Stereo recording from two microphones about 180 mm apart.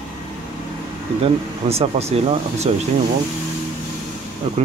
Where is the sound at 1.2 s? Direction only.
35° right (ahead or behind).